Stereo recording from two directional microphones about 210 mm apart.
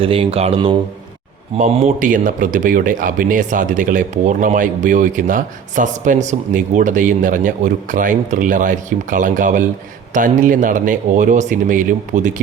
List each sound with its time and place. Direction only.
0.0 s speech: 25° right (ahead or behind)